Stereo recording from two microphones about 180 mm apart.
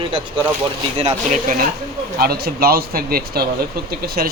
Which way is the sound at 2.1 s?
60° right (ahead or behind).